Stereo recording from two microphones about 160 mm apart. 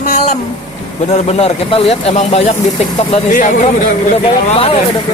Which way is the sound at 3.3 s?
55° left (ahead or behind).